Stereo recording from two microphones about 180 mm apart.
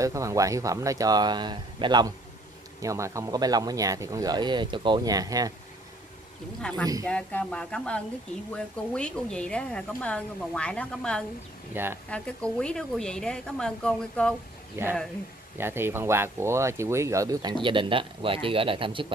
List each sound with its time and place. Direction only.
0.0 s speech: 15° right (ahead or behind)
6.7 s speech: 5° left (ahead or behind)
11.7 s speech: 10° right (ahead or behind)
12.1 s speech: 5° left (ahead or behind)
14.8 s speech: 10° right (ahead or behind); by 19.1 s 30° right (ahead or behind)